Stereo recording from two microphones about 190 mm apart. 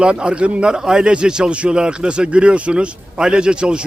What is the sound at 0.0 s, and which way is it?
A man's voice, 5° right (ahead or behind).